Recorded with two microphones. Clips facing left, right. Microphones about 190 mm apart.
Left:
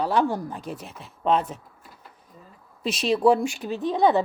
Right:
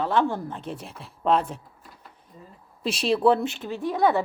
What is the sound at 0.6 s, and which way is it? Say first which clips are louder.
Speech: even; 30° right (ahead or behind).